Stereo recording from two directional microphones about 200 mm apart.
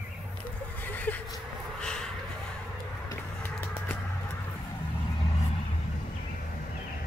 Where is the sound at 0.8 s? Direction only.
10° left (ahead or behind).